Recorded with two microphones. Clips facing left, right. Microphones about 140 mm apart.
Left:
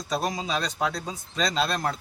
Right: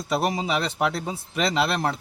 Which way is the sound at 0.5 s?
20° right (ahead or behind).